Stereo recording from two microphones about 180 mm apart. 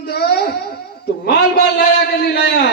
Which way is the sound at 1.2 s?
65° left (ahead or behind).